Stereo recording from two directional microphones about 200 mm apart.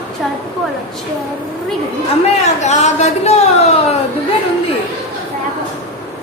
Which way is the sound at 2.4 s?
35° left (ahead or behind).